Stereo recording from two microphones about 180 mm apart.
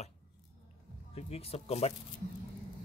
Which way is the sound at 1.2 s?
35° left (ahead or behind).